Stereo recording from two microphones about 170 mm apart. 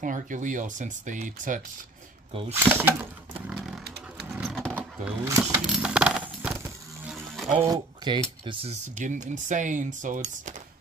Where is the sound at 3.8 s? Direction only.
75° right (ahead or behind).